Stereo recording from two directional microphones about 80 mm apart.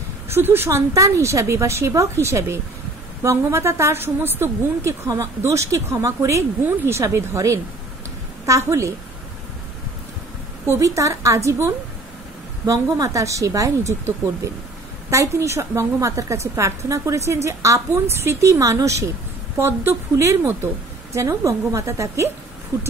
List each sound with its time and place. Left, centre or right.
0.3 s a woman's voice: right
10.7 s a woman's voice: right
12.9 s a woman's voice: right